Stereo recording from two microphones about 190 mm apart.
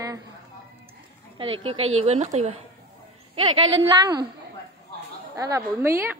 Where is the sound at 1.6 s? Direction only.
30° right (ahead or behind).